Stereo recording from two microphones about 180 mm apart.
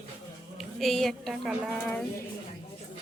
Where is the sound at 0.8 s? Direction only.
Centre (ahead or behind).